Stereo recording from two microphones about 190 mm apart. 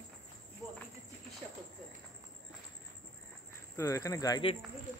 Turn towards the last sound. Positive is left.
turn(degrees=20)  # may be behind; listen again after turning